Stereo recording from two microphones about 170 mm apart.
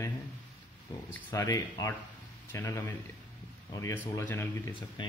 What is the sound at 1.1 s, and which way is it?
Speech, 20° left (ahead or behind).